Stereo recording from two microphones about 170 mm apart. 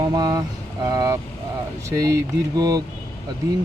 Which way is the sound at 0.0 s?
25° right (ahead or behind).